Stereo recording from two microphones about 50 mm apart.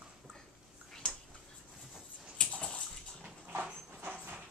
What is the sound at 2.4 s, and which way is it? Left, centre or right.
Bathtub, centre.